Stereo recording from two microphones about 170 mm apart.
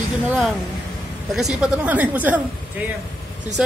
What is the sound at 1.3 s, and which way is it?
A woman's voice, centre (ahead or behind).